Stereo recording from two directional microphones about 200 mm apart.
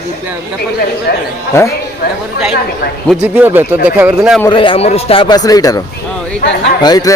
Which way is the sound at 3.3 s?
10° right (ahead or behind).